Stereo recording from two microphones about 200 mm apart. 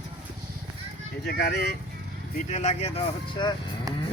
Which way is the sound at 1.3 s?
55° left (ahead or behind).